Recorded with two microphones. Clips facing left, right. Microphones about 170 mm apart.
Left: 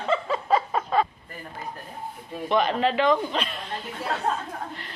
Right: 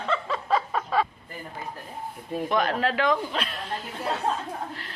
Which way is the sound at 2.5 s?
Centre (ahead or behind).